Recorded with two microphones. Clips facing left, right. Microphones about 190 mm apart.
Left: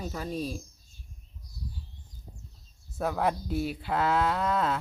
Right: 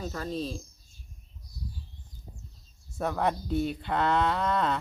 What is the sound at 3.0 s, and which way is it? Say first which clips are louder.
Speech: even; 5° left (ahead or behind).